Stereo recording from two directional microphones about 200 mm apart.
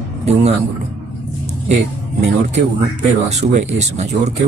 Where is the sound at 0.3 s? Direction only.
35° right (ahead or behind).